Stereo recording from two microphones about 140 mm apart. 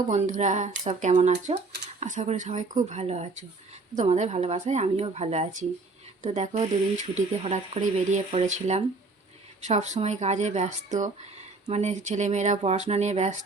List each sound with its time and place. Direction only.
0.1 s speech: 60° right (ahead or behind)
1.3 s speech: 50° right (ahead or behind)